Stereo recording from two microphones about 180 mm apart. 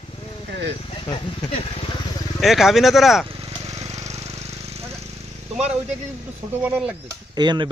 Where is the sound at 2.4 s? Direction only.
Centre (ahead or behind).